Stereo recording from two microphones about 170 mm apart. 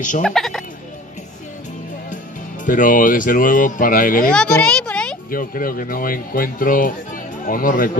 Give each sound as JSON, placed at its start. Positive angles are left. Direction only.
{"t": 0.2, "sound": "fowl", "side_deg": 5}
{"t": 2.6, "sound": "speech", "side_deg": 50}
{"t": 4.3, "sound": "speech", "side_deg": 5}
{"t": 5.3, "sound": "speech", "side_deg": 55}